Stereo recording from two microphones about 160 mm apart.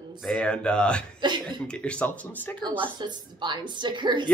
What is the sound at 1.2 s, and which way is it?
Speech, 30° right (ahead or behind).